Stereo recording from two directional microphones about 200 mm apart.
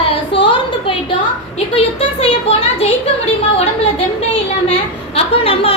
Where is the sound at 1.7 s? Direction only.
30° left (ahead or behind).